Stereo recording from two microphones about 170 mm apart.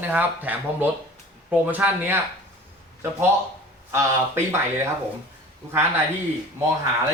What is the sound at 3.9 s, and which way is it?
Speech, 15° right (ahead or behind).